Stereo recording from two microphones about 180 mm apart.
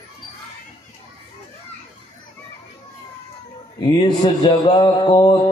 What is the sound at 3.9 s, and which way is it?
Music, 25° left (ahead or behind).